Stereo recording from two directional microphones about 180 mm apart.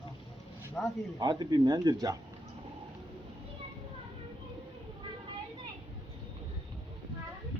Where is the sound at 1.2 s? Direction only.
25° right (ahead or behind).